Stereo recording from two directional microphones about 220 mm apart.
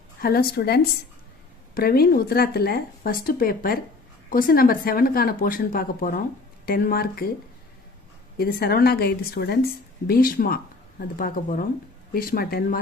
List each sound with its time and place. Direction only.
0.2 s a woman's voice: 45° left (ahead or behind)
8.4 s a woman's voice: 45° left (ahead or behind)